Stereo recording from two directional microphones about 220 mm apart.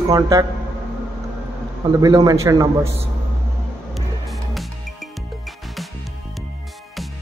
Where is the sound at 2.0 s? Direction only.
15° right (ahead or behind).